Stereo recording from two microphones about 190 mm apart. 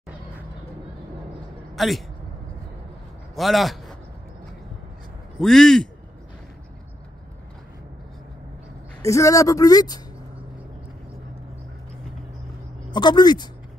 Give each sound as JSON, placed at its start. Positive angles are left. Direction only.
{"t": 1.8, "sound": "a man's voice", "side_deg": 0}
{"t": 3.3, "sound": "a man's voice", "side_deg": 0}
{"t": 5.4, "sound": "a man's voice", "side_deg": 0}
{"t": 9.0, "sound": "speech", "side_deg": 15}
{"t": 12.9, "sound": "speech", "side_deg": 20}